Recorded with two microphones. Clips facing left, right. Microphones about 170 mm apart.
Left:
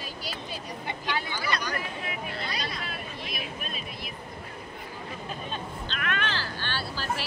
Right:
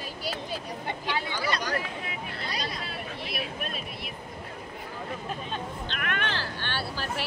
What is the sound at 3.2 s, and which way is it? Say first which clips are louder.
Speech: right 4 dB; 70° right (ahead or behind).